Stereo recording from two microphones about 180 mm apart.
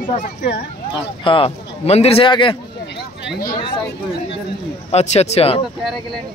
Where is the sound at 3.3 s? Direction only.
55° left (ahead or behind).